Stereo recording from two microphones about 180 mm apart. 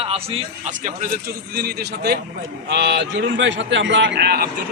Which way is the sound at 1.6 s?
60° right (ahead or behind).